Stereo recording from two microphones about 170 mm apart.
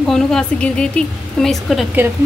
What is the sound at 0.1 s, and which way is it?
Speech, 5° left (ahead or behind).